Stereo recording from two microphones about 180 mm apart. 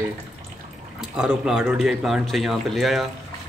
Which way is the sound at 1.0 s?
5° right (ahead or behind).